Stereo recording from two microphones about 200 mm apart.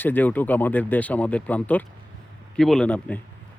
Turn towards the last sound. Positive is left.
turn(degrees=5)  # may be behind; listen again after turning